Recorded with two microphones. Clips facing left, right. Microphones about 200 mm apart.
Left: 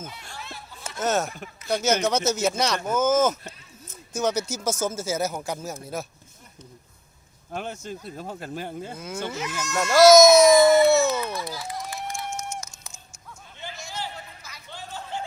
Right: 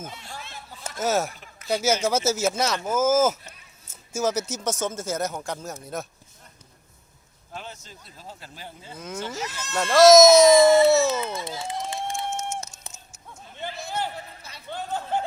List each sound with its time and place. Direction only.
0.9 s speech: 5° right (ahead or behind)
7.5 s speech: 55° left (ahead or behind)
9.0 s speech: centre (ahead or behind)
9.3 s speech: 35° right (ahead or behind)
9.9 s speech: centre (ahead or behind)
10.4 s run: 25° right (ahead or behind)
13.6 s a sound: 60° right (ahead or behind)